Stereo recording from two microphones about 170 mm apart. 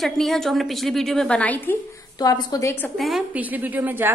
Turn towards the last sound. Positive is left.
turn(degrees=-10)  # may be behind; listen again after turning